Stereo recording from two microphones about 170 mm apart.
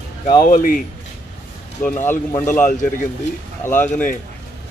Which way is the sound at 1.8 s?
10° left (ahead or behind).